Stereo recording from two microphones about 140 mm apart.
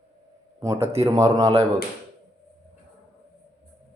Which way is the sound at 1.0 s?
25° right (ahead or behind).